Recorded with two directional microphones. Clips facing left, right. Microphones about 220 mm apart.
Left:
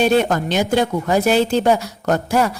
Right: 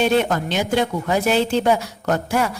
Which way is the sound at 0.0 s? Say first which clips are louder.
Left 2 dB; 45° left (ahead or behind).